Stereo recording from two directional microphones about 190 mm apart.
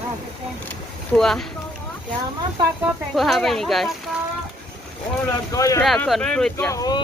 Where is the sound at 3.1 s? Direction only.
Centre (ahead or behind).